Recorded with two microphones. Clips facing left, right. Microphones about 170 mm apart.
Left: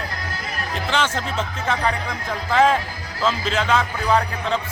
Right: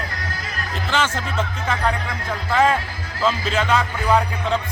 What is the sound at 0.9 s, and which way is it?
A man's voice, 10° right (ahead or behind).